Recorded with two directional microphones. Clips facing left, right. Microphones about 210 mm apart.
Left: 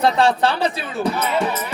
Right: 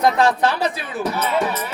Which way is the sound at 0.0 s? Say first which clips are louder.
Even; 30° left (ahead or behind).